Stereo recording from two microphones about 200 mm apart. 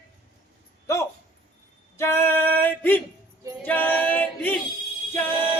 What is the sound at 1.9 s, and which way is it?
Speech, 10° left (ahead or behind).